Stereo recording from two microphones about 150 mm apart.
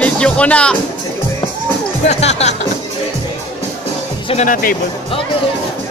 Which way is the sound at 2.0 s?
50° left (ahead or behind).